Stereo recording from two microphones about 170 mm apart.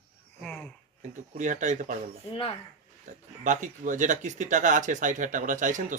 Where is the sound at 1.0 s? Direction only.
45° right (ahead or behind).